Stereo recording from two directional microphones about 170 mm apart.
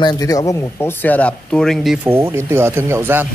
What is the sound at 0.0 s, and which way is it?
Speech, 25° left (ahead or behind).